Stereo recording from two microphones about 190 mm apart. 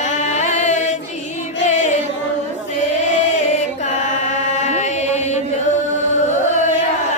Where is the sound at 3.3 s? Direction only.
40° left (ahead or behind).